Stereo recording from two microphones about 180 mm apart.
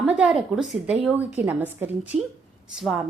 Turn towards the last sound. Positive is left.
turn(degrees=0)  # may be behind; listen again after turning